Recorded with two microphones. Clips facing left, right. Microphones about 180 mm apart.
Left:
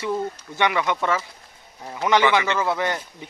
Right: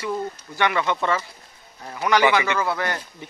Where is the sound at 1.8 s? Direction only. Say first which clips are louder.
Even; 20° left (ahead or behind).